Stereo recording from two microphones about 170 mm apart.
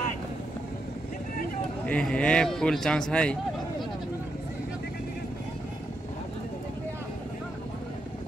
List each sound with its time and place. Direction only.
1.9 s a man's voice: 5° left (ahead or behind)